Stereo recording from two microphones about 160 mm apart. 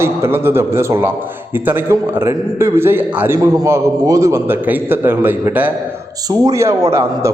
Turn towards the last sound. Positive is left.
turn(degrees=-15)  # may be behind; listen again after turning